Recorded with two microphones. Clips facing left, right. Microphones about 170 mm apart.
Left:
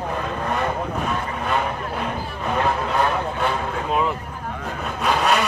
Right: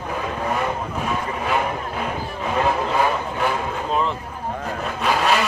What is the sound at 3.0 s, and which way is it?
Vehicle, 5° right (ahead or behind).